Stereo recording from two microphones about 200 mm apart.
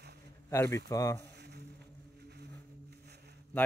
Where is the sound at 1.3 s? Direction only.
55° right (ahead or behind).